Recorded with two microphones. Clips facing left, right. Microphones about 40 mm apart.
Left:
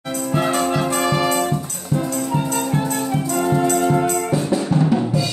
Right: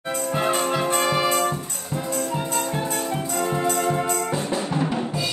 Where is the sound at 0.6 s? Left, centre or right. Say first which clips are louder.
Left 3 dB; centre.